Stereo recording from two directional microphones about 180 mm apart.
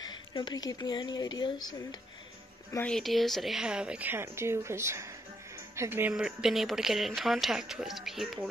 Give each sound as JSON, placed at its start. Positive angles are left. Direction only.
{"t": 0.0, "sound": "speech", "side_deg": 25}
{"t": 2.7, "sound": "speech", "side_deg": 5}